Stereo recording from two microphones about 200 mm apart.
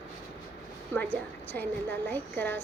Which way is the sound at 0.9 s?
10° left (ahead or behind).